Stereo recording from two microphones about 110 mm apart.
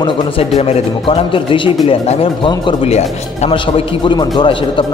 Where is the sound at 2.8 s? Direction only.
85° left.